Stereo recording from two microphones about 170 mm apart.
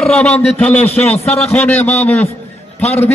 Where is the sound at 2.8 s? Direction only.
40° left (ahead or behind).